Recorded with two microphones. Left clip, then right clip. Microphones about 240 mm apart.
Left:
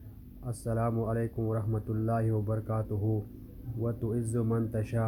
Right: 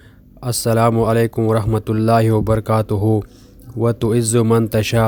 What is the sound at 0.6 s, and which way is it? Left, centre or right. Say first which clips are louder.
Speech: right 17 dB; right.